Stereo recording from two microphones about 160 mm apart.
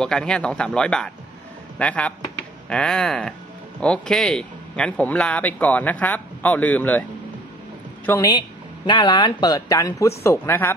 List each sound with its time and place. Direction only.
0.0 s a man's voice: 5° left (ahead or behind)
8.3 s speech: 30° left (ahead or behind)